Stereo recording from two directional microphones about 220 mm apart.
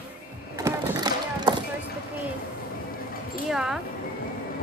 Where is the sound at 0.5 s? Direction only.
15° right (ahead or behind).